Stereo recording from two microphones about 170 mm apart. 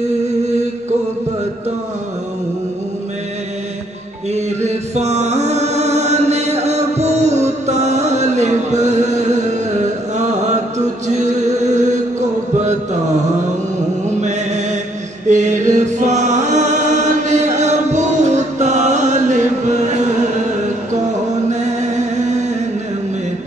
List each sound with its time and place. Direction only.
4.6 s music: 40° right (ahead or behind)
14.0 s chant: 45° right (ahead or behind)
21.5 s chant: 45° right (ahead or behind)